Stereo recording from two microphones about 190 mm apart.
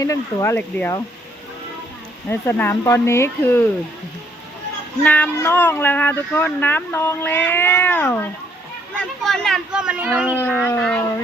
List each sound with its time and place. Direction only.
0.0 s speech: 20° left (ahead or behind)
2.3 s speech: 10° left (ahead or behind)
5.0 s speech: 10° left (ahead or behind); by 10.3 s 10° right (ahead or behind)
10.3 s speech: 5° left (ahead or behind)